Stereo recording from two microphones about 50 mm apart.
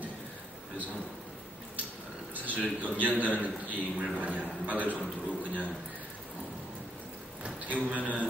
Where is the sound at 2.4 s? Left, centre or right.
Right.